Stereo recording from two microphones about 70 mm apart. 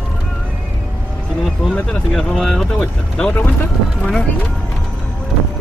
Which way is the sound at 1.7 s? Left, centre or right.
Centre.